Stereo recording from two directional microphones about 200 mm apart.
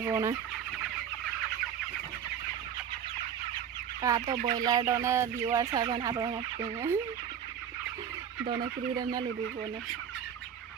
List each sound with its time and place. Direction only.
0.0 s speech: 15° right (ahead or behind)
4.0 s speech: 20° right (ahead or behind)
8.4 s fowl: 25° right (ahead or behind)